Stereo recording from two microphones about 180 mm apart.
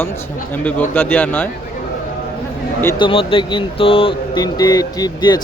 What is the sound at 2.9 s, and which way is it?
Speech, 30° left (ahead or behind).